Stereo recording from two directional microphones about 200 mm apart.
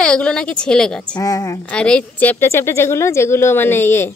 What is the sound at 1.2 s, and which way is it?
Speech, 15° left (ahead or behind).